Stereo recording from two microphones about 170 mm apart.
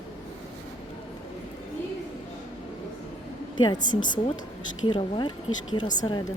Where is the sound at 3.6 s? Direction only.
25° left (ahead or behind).